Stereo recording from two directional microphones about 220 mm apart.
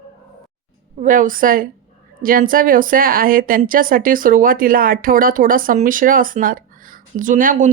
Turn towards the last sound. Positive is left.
turn(degrees=-35)  # may be behind; listen again after turning